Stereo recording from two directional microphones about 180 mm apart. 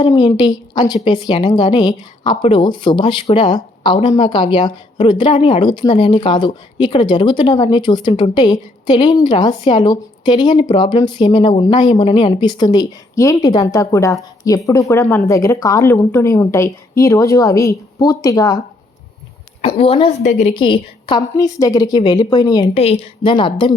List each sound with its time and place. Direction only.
0.0 s a woman's voice: 25° left (ahead or behind)
19.6 s a woman's voice: 30° left (ahead or behind)